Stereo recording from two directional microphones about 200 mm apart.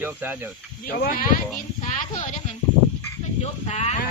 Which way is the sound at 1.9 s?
40° left (ahead or behind).